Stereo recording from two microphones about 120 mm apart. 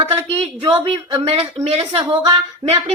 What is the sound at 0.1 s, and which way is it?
Speech, 50° right (ahead or behind).